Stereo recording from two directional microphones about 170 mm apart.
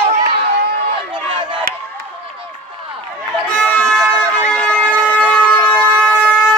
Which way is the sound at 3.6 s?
5° left (ahead or behind).